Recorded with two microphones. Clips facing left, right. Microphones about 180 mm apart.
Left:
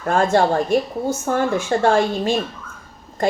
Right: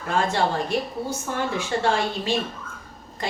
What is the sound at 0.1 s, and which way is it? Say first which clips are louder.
A woman's voice: left 6 dB; 50° left (ahead or behind).